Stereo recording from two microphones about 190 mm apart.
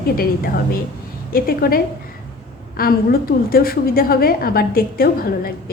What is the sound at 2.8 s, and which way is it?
A woman's voice, 50° left (ahead or behind).